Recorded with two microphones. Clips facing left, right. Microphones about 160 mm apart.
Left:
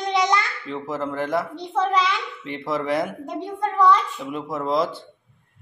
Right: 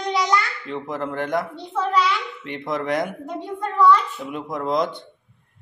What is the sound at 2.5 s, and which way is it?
Speech, 5° left (ahead or behind).